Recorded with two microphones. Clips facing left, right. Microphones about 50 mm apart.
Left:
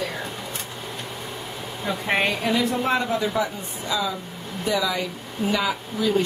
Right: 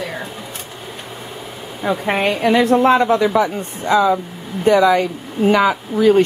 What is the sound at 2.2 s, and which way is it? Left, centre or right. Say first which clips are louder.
A woman's voice: right 8 dB; right.